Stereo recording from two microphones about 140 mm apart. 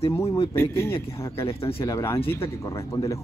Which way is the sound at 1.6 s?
40° left (ahead or behind).